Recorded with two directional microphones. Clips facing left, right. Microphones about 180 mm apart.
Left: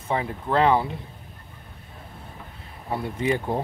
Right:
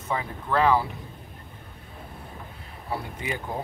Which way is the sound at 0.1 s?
30° left (ahead or behind).